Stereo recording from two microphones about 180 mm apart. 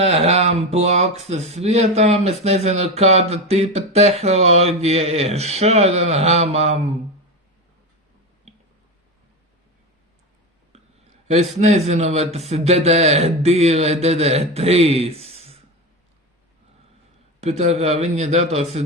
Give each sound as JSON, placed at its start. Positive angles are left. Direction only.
{"t": 0.0, "sound": "speech", "side_deg": -35}
{"t": 11.3, "sound": "speech", "side_deg": -40}
{"t": 17.4, "sound": "speech", "side_deg": -35}